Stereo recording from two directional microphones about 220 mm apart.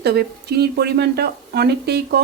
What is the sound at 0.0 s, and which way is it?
Speech, 45° right (ahead or behind).